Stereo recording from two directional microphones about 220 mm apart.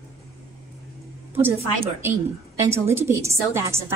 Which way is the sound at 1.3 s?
10° right (ahead or behind).